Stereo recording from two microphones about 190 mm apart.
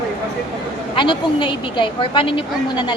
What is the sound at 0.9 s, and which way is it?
A woman's voice, 25° left (ahead or behind).